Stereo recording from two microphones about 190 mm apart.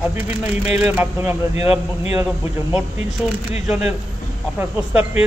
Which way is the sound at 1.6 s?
30° left (ahead or behind).